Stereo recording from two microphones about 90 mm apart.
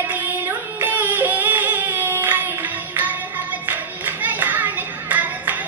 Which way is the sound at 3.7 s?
20° right (ahead or behind).